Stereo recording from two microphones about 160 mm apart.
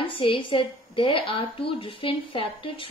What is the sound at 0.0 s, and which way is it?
A woman's voice, 35° left (ahead or behind).